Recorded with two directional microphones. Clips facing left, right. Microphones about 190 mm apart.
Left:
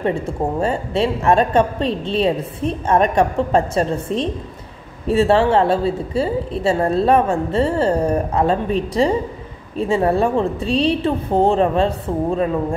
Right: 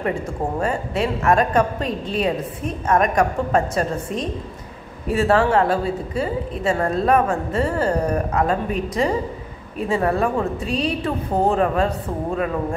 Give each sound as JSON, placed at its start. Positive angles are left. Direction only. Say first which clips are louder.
{"t": 0.6, "sound": "a woman's voice", "louder": "left 3 dB", "side_deg": 30}